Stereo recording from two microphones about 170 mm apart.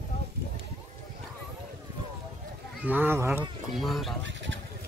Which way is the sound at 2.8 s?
10° right (ahead or behind).